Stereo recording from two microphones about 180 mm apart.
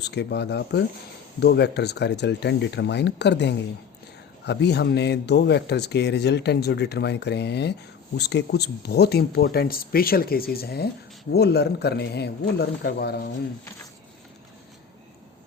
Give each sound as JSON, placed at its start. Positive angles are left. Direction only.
{"t": 0.0, "sound": "a man's voice", "side_deg": 70}